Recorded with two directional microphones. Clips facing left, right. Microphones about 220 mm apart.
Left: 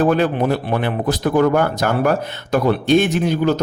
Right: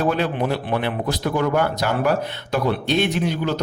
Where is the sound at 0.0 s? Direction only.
45° left (ahead or behind).